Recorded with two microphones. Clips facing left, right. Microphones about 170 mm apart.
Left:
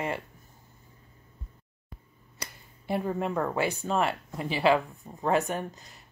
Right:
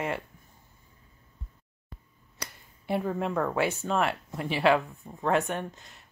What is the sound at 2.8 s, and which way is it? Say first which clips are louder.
Speech: even; centre (ahead or behind).